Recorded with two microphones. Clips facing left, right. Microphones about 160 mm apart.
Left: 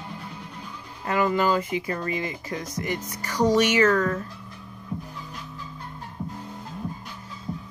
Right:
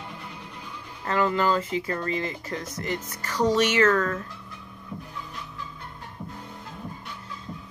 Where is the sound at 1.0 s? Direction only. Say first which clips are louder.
Left 1 dB; 10° left (ahead or behind).